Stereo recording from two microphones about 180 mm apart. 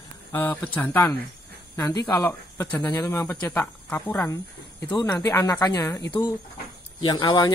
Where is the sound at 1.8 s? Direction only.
20° left (ahead or behind).